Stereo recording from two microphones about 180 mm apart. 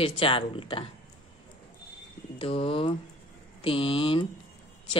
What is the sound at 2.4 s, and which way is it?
A woman's voice, 30° left (ahead or behind).